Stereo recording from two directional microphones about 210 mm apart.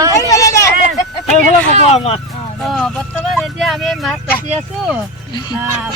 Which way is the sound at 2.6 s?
Centre (ahead or behind).